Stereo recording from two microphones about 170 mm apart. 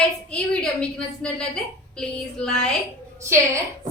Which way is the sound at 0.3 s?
5° left (ahead or behind).